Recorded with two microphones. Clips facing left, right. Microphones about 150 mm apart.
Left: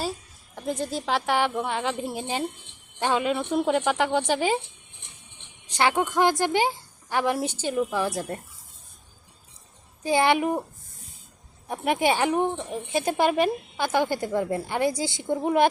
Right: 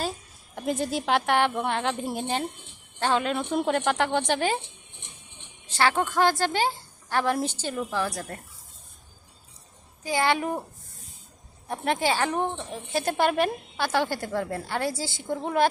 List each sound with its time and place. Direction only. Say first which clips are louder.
0.5 s a woman's voice: right 1 dB; 5° right (ahead or behind)
5.6 s a woman's voice: left 1 dB; 15° left (ahead or behind)
10.0 s a child's voice: left 4 dB; 20° left (ahead or behind)
11.7 s a woman's voice: left 2 dB; 15° left (ahead or behind)